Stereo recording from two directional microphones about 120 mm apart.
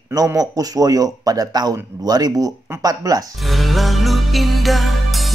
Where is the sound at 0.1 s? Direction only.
30° right (ahead or behind).